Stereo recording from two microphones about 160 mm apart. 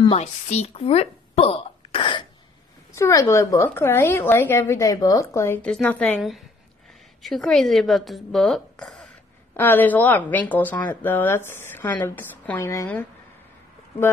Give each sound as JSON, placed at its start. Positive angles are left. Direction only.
{"t": 0.0, "sound": "speech", "side_deg": 40}
{"t": 2.9, "sound": "speech", "side_deg": 20}